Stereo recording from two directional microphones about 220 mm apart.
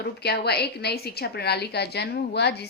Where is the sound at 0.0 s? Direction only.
45° left (ahead or behind).